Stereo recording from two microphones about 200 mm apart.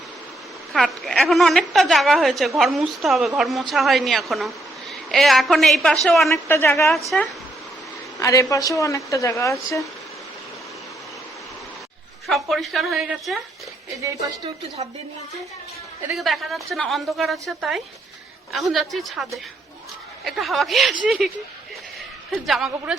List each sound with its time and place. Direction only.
0.7 s a woman's voice: centre (ahead or behind)
6.3 s a woman's voice: 10° left (ahead or behind)
7.1 s a woman's voice: centre (ahead or behind)
8.2 s a woman's voice: 15° left (ahead or behind)
12.3 s a woman's voice: centre (ahead or behind)
16.1 s a woman's voice: centre (ahead or behind)
22.4 s a woman's voice: centre (ahead or behind)